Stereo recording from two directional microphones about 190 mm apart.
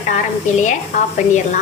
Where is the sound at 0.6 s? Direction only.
40° left (ahead or behind).